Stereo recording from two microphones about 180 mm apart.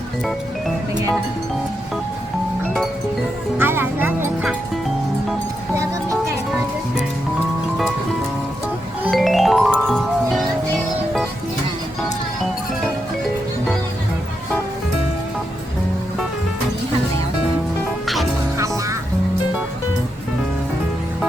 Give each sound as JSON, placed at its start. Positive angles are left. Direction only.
{"t": 3.6, "sound": "speech", "side_deg": -10}
{"t": 5.7, "sound": "music", "side_deg": -15}
{"t": 9.0, "sound": "music", "side_deg": 0}
{"t": 18.0, "sound": "music", "side_deg": 0}
{"t": 18.5, "sound": "music", "side_deg": -15}